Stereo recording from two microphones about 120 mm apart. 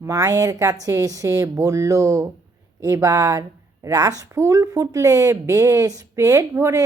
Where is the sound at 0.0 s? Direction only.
25° right (ahead or behind).